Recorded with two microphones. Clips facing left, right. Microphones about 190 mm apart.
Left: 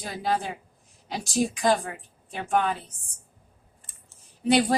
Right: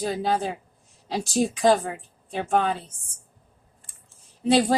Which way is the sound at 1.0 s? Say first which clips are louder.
Right 2 dB; 25° right (ahead or behind).